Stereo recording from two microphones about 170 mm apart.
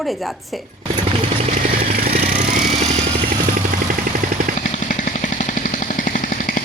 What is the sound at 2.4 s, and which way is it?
Vehicle, 50° right (ahead or behind).